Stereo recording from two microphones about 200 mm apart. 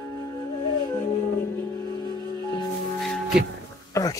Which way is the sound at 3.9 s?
15° left (ahead or behind).